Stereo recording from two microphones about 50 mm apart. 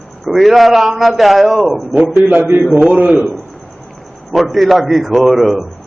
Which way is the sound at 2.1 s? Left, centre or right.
Right.